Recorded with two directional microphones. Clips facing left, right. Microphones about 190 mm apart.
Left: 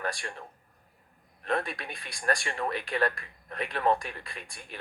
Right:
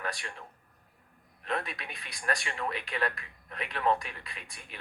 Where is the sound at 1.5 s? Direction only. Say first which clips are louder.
Left 4 dB; 35° left (ahead or behind).